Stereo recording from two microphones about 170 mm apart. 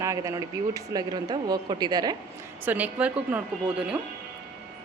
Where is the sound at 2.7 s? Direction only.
10° right (ahead or behind).